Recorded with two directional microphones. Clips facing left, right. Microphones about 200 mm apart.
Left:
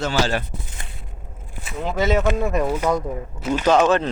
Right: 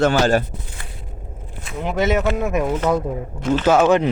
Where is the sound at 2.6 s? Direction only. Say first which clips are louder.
Right 2 dB; 10° left (ahead or behind).